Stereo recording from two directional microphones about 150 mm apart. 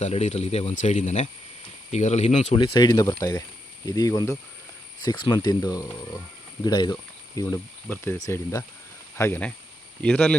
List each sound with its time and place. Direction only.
0.0 s speech: 45° left (ahead or behind)
2.7 s speech: 30° left (ahead or behind)
7.9 s speech: 10° left (ahead or behind)